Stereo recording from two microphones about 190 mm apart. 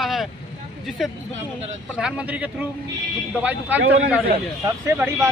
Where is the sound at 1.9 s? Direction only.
5° right (ahead or behind).